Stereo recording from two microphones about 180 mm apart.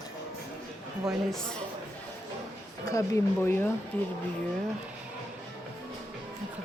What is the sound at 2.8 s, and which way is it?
Speech, 15° left (ahead or behind).